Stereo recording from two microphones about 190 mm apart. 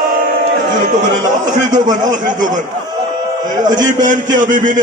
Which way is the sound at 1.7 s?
20° right (ahead or behind).